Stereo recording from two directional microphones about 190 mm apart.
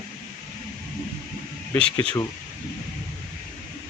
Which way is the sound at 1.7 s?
10° left (ahead or behind).